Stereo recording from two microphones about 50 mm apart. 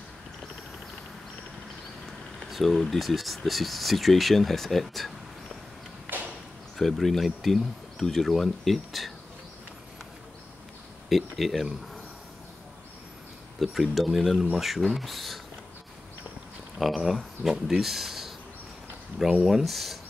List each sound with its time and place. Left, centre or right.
2.5 s speech: centre
6.1 s a sound: right
6.8 s speech: centre
11.1 s speech: centre
13.6 s speech: centre
16.7 s speech: centre
19.4 s speech: centre